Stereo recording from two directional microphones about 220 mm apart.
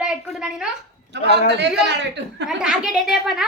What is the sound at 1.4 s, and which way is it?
A woman's voice, 50° right (ahead or behind).